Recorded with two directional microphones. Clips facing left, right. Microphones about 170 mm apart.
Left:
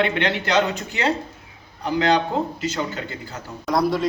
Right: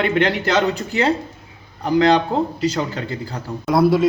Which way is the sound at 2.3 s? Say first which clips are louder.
Right 4 dB; 35° right (ahead or behind).